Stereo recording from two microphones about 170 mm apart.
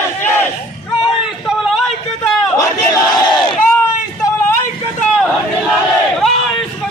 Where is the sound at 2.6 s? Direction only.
20° left (ahead or behind).